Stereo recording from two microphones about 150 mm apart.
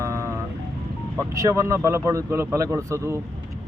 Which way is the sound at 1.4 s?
20° right (ahead or behind).